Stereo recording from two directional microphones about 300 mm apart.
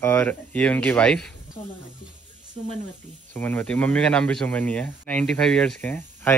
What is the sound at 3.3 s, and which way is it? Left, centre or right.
Speech, centre.